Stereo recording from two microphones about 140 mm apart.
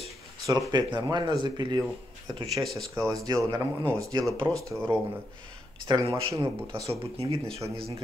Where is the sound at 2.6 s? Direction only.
Centre (ahead or behind).